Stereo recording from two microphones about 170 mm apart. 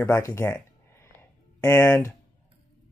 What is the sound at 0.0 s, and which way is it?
Speech, 15° left (ahead or behind).